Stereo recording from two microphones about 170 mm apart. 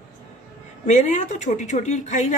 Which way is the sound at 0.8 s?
45° left (ahead or behind).